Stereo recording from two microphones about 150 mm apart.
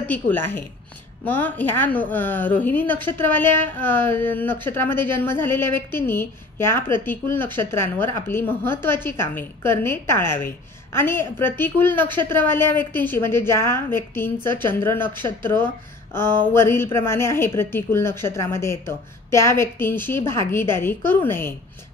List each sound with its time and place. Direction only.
0.1 s a woman's voice: 15° left (ahead or behind)